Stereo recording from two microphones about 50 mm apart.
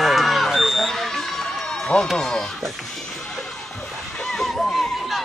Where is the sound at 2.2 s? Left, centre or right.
Centre.